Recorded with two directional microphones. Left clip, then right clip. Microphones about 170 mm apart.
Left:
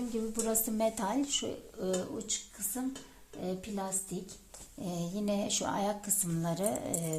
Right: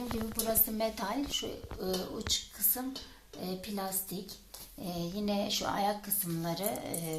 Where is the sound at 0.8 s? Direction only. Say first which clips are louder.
Left 2 dB; 90° left.